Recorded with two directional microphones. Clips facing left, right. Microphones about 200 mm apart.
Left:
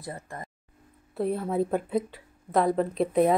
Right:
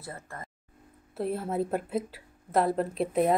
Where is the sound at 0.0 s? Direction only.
15° left (ahead or behind).